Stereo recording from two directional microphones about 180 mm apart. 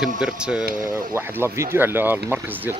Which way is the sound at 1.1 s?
15° right (ahead or behind).